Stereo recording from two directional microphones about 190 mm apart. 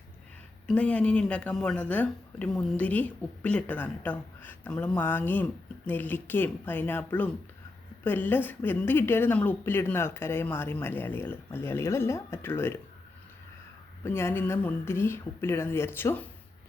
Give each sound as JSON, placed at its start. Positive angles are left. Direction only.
{"t": 0.7, "sound": "speech", "side_deg": 5}
{"t": 14.0, "sound": "speech", "side_deg": 15}